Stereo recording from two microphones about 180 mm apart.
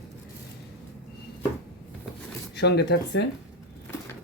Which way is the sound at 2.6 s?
65° left (ahead or behind).